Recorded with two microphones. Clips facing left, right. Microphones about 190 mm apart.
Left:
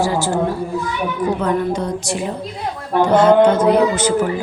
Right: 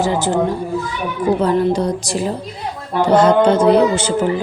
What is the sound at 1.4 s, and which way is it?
A man's voice, 30° right (ahead or behind).